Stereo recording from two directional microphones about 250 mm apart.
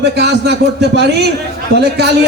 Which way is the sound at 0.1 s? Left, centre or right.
Right.